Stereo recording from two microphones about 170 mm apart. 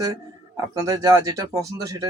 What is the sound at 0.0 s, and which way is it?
Speech, 20° right (ahead or behind).